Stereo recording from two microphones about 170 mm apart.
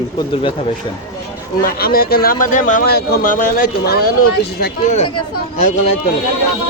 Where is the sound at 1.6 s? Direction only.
60° left (ahead or behind).